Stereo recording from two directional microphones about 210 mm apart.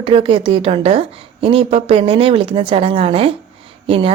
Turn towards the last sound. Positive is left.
turn(degrees=-25)  # may be behind; listen again after turning